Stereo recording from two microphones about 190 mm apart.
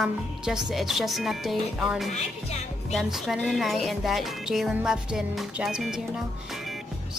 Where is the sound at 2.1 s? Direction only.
35° left (ahead or behind).